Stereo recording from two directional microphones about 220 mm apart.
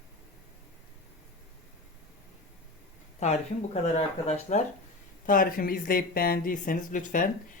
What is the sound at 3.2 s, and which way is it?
Speech, 30° left (ahead or behind).